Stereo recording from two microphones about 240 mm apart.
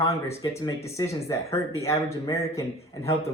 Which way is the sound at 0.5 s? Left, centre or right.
Centre.